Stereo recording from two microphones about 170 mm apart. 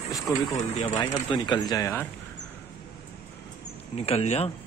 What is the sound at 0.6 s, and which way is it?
Speech, 40° left (ahead or behind).